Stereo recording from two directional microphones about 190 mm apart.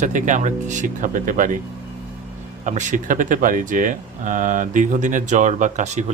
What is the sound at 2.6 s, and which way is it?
Speech, 40° right (ahead or behind).